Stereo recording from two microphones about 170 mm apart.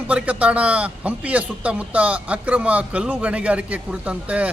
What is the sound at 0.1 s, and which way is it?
A man's voice, 5° right (ahead or behind).